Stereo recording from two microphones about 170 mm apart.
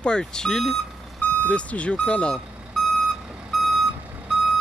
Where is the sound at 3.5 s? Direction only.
Centre (ahead or behind).